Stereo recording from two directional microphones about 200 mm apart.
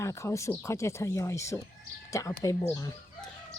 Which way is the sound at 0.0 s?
15° left (ahead or behind).